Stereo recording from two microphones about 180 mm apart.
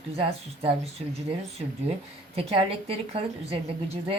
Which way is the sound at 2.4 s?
30° right (ahead or behind).